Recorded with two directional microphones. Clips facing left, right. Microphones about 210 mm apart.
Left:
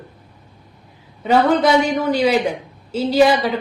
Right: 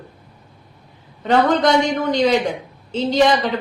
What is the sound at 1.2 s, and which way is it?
A man's voice, 5° left (ahead or behind).